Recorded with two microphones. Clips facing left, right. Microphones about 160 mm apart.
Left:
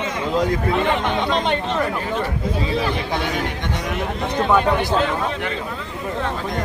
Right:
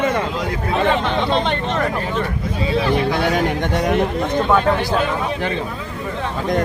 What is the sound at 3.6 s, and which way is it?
Speech, 50° right (ahead or behind).